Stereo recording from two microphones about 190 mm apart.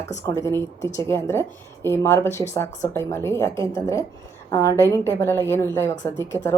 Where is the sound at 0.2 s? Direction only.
15° left (ahead or behind).